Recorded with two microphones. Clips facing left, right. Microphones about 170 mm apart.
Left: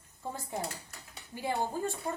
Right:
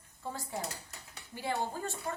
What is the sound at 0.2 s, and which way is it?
A woman's voice, 20° left (ahead or behind).